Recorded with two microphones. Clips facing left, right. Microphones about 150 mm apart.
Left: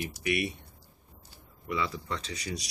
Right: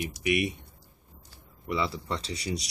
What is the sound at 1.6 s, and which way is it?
Speech, 30° right (ahead or behind).